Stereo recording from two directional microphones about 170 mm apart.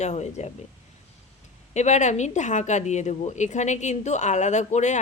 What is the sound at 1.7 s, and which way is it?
Speech, 40° left (ahead or behind).